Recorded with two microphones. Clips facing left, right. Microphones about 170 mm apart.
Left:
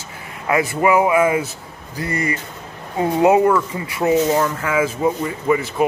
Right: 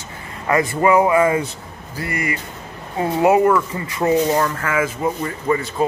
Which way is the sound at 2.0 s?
25° left (ahead or behind).